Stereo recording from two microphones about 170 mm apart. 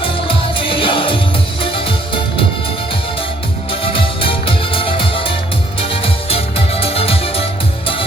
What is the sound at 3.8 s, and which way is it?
Music, 30° left (ahead or behind).